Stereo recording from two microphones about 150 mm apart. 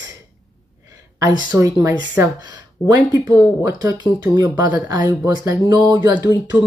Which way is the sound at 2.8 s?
30° left (ahead or behind).